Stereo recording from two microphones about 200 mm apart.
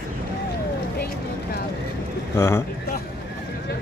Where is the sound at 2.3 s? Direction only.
15° left (ahead or behind).